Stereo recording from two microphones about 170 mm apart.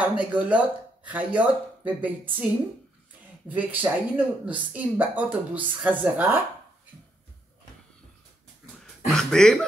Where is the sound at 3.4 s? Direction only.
10° right (ahead or behind).